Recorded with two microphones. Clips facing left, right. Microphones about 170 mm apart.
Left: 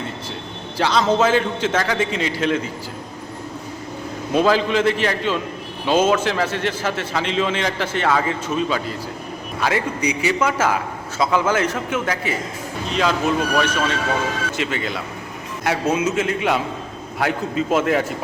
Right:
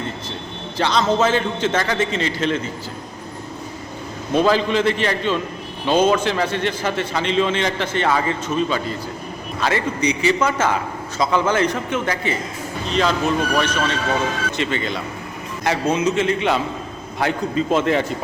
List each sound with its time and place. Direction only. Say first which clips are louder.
0.8 s a man's voice: left 1 dB; 10° left (ahead or behind)
4.3 s a man's voice: even; 5° left (ahead or behind)